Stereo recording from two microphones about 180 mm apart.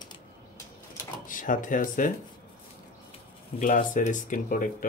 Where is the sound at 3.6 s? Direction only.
45° left (ahead or behind).